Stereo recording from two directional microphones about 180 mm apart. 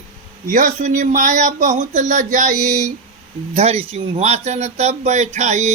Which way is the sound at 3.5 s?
35° right (ahead or behind).